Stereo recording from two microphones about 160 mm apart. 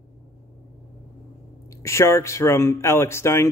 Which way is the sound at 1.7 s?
20° left (ahead or behind).